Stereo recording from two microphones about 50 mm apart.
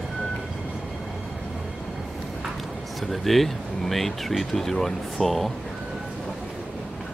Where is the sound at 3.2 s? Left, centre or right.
Centre.